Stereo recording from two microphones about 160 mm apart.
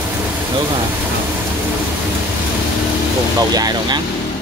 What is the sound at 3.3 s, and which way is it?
Speech, 25° right (ahead or behind).